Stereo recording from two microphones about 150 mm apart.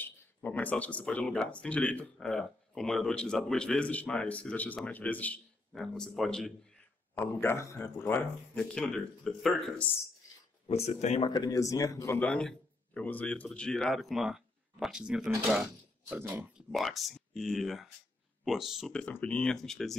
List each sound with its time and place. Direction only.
0.0 s speech: 10° left (ahead or behind)
7.2 s speech: 15° left (ahead or behind)
10.9 s speech: 50° left (ahead or behind)
11.2 s speech: 25° left (ahead or behind)
12.2 s speech: 5° left (ahead or behind)